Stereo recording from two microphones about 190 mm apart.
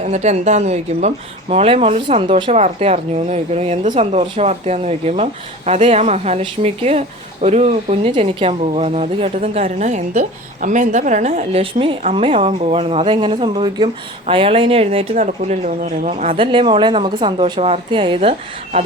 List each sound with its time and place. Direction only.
0.0 s a woman's voice: 35° right (ahead or behind)